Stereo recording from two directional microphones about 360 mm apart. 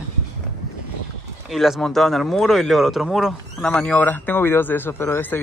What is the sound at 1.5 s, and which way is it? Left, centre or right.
Speech, centre.